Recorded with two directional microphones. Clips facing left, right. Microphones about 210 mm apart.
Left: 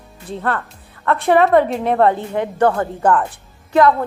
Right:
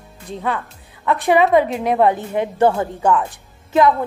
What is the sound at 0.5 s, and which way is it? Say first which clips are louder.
Music: left 1 dB; 10° right (ahead or behind).